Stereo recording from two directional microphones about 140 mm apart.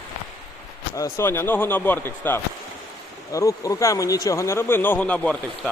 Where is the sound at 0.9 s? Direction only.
20° left (ahead or behind).